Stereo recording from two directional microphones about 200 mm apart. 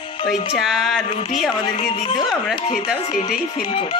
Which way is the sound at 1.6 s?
25° left (ahead or behind).